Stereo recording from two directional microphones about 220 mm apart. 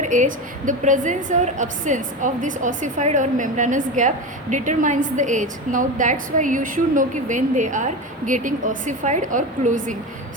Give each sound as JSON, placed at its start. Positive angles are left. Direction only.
{"t": 0.0, "sound": "a woman's voice", "side_deg": -35}